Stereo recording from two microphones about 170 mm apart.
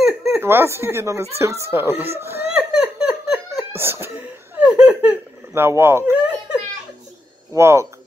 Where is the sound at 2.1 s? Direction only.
15° right (ahead or behind).